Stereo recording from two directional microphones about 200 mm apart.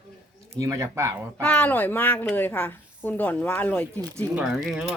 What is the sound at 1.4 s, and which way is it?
A child's voice, 5° left (ahead or behind).